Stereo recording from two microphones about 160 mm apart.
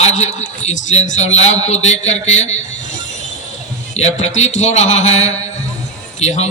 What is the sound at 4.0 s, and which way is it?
A man's voice, 45° left (ahead or behind).